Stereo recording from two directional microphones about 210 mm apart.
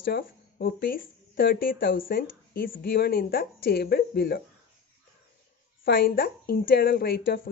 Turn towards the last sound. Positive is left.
turn(degrees=45)  # may be behind; listen again after turning